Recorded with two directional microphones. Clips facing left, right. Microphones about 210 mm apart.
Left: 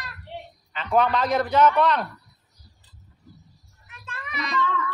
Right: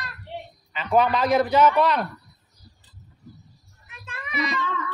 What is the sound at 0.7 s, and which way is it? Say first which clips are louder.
A man's voice: right 1 dB; 5° right (ahead or behind).